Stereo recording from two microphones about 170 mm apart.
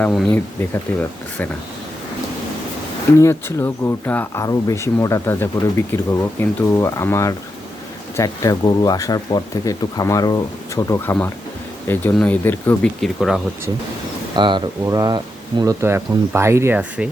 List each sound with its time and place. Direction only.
0.1 s speech: centre (ahead or behind)
0.6 s speech: 10° left (ahead or behind)
3.2 s speech: 15° left (ahead or behind)
13.0 s speech: centre (ahead or behind)
14.3 s speech: 25° right (ahead or behind); by 17.1 s 10° right (ahead or behind)